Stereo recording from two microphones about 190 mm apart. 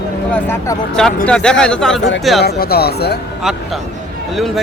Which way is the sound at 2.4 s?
55° left (ahead or behind).